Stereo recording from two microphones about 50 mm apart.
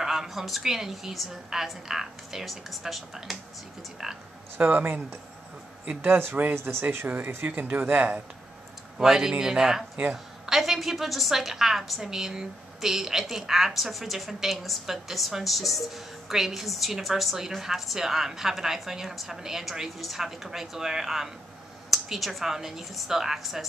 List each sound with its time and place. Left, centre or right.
0.0 s speech: centre
4.6 s speech: right
6.4 s speech: right
6.7 s speech: right
7.1 s speech: right
8.9 s a woman's voice: centre